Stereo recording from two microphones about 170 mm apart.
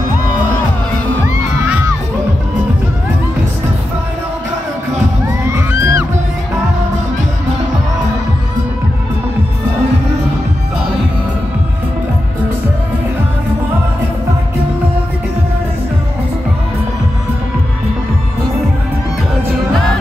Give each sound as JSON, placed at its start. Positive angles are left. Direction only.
{"t": 1.2, "sound": "crowd", "side_deg": -15}
{"t": 5.5, "sound": "music", "side_deg": -15}